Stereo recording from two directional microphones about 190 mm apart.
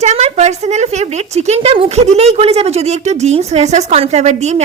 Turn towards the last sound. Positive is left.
turn(degrees=-35)  # may be behind; listen again after turning